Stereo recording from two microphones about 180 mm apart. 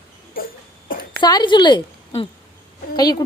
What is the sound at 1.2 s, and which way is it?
A woman's voice, 25° left (ahead or behind).